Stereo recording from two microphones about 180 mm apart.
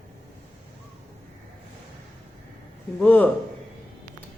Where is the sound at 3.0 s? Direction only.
10° left (ahead or behind).